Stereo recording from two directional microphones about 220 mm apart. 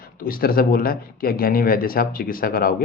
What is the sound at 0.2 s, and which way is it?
Speech, 40° left (ahead or behind).